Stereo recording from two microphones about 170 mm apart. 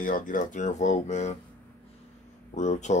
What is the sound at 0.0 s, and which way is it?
Speech, 50° left (ahead or behind).